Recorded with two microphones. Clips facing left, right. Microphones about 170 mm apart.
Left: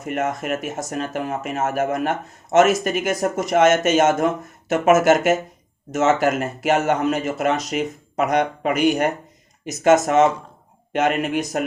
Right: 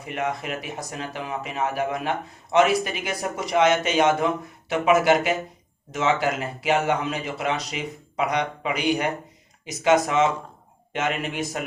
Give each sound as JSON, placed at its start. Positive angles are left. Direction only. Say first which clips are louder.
{"t": 0.0, "sound": "speech", "louder": "left 4 dB", "side_deg": 45}